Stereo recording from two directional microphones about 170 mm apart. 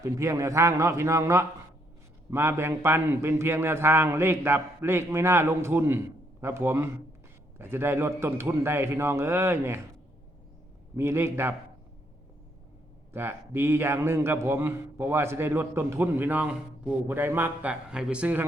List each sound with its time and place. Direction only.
0.0 s a man's voice: 15° right (ahead or behind)
10.9 s a man's voice: 15° right (ahead or behind)
13.1 s a man's voice: 15° right (ahead or behind)